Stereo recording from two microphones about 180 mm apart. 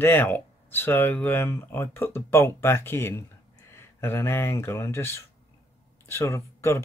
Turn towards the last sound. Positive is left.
turn(degrees=15)  # may be behind; listen again after turning